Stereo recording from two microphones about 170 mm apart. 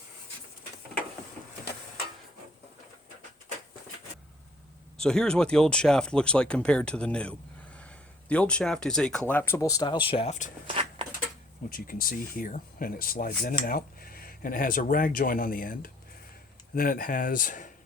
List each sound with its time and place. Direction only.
4.9 s speech: 5° left (ahead or behind); by 10.5 s 45° left (ahead or behind)
11.7 s speech: 60° left (ahead or behind)